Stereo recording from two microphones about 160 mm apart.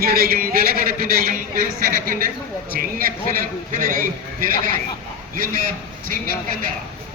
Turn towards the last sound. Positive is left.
turn(degrees=-60)  # may be behind; listen again after turning